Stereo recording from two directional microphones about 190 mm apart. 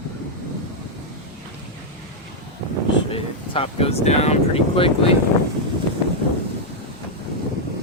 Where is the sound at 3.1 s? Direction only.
30° left (ahead or behind).